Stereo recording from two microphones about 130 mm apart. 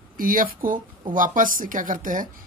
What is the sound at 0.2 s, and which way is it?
A woman's voice, 90° right.